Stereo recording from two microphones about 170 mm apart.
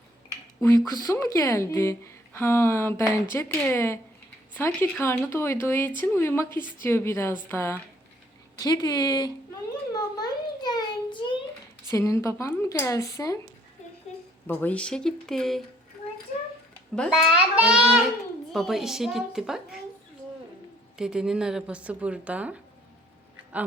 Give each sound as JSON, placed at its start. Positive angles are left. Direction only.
{"t": 0.9, "sound": "a woman's voice", "side_deg": 20}
{"t": 9.9, "sound": "a sound", "side_deg": 25}
{"t": 11.9, "sound": "a woman's voice", "side_deg": 15}
{"t": 14.4, "sound": "a woman's voice", "side_deg": 10}
{"t": 16.9, "sound": "a woman's voice", "side_deg": 5}
{"t": 17.2, "sound": "a woman's voice", "side_deg": -5}
{"t": 21.0, "sound": "a woman's voice", "side_deg": -5}